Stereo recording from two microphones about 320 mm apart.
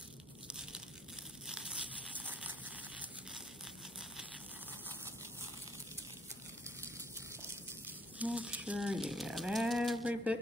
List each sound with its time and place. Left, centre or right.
0.5 s tearing: centre
1.5 s a sound: centre
6.6 s gush: centre
8.2 s speech: centre